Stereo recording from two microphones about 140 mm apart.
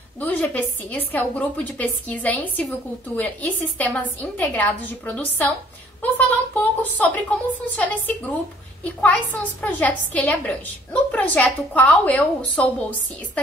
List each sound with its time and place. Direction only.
0.2 s a woman's voice: 10° left (ahead or behind)